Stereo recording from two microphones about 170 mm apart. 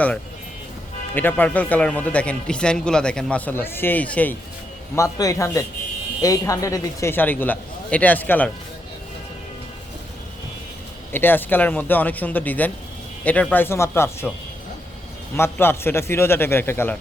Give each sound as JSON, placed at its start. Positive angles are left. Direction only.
{"t": 1.1, "sound": "a man's voice", "side_deg": 10}
{"t": 4.9, "sound": "a man's voice", "side_deg": 20}
{"t": 11.1, "sound": "a man's voice", "side_deg": 10}
{"t": 15.4, "sound": "a man's voice", "side_deg": 15}